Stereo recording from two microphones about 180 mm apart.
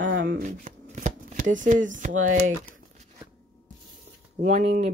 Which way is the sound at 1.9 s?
45° right (ahead or behind).